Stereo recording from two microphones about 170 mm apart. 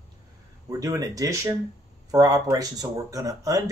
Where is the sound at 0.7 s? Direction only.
20° right (ahead or behind).